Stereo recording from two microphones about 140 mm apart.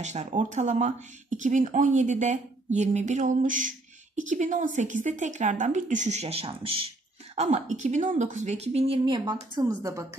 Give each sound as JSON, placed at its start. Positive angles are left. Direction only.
{"t": 0.0, "sound": "speech", "side_deg": -55}
{"t": 7.3, "sound": "a woman's voice", "side_deg": -50}